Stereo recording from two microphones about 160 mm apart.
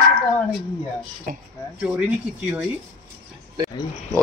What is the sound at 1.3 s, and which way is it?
Speech, 60° right (ahead or behind).